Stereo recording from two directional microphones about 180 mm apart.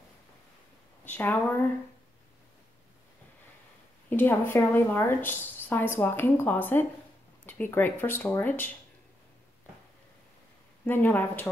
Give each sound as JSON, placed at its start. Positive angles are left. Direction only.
{"t": 1.0, "sound": "a woman's voice", "side_deg": 10}
{"t": 4.1, "sound": "a woman's voice", "side_deg": 10}
{"t": 10.9, "sound": "a woman's voice", "side_deg": 10}